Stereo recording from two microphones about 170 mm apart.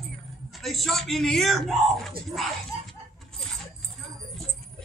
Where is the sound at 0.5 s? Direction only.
Centre (ahead or behind).